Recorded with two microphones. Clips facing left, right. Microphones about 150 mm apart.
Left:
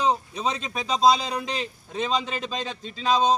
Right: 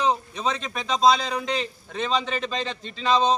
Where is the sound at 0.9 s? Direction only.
5° left (ahead or behind).